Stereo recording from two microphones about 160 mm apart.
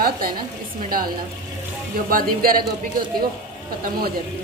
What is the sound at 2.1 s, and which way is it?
Speech, 65° right (ahead or behind).